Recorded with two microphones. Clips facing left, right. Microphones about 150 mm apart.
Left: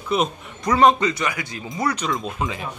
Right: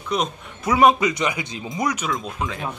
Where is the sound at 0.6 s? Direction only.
10° right (ahead or behind).